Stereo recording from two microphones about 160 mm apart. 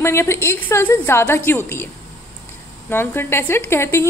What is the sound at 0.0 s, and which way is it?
A woman's voice, 15° left (ahead or behind).